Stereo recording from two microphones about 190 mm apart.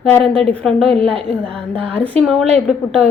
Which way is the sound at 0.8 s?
30° right (ahead or behind).